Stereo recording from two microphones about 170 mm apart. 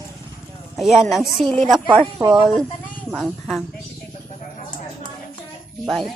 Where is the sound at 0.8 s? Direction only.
Centre (ahead or behind).